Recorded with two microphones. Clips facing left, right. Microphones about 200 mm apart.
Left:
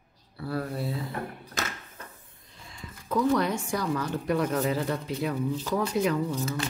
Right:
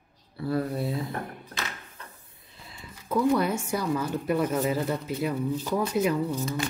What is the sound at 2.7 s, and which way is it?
Speech, 10° right (ahead or behind).